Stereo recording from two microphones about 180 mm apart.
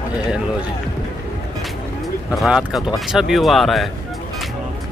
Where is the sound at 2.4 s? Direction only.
5° right (ahead or behind).